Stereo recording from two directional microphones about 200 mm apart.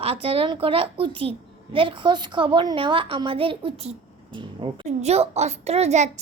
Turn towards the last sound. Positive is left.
turn(degrees=-35)  # may be behind; listen again after turning